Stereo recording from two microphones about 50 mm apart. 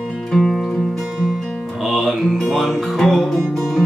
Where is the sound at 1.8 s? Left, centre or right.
Centre.